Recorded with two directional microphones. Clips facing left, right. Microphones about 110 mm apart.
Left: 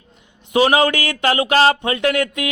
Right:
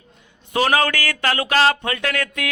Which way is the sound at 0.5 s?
15° left (ahead or behind).